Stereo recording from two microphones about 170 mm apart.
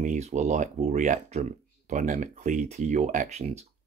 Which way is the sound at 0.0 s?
45° right (ahead or behind).